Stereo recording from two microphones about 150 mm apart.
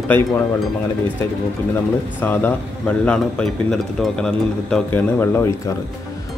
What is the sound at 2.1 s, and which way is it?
Speech, 15° left (ahead or behind).